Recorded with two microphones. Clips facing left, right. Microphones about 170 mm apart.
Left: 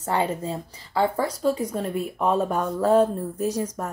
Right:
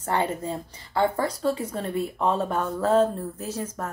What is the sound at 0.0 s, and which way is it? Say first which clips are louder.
A woman's voice: left 1 dB; 10° left (ahead or behind).